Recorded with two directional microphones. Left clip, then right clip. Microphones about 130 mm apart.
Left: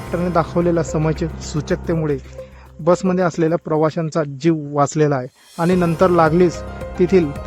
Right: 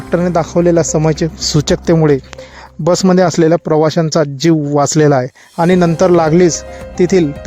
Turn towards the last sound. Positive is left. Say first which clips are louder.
# right 4 dB
turn(degrees=-25)  # may be behind; listen again after turning